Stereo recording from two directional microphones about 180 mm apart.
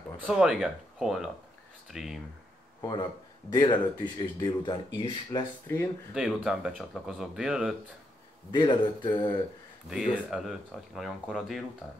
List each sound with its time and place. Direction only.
0.3 s speech: 5° right (ahead or behind)
2.8 s speech: 25° left (ahead or behind)
6.1 s speech: 5° right (ahead or behind)
8.5 s speech: 25° left (ahead or behind)
9.8 s speech: 5° right (ahead or behind)